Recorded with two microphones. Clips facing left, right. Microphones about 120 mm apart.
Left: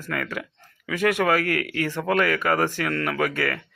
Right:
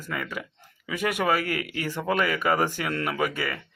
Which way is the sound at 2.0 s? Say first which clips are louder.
Left 2 dB; 5° right (ahead or behind).